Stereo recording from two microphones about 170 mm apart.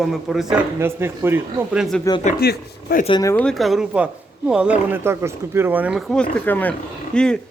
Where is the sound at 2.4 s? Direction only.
65° left (ahead or behind).